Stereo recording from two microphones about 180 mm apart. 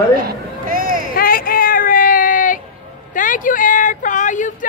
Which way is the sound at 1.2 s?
55° left (ahead or behind).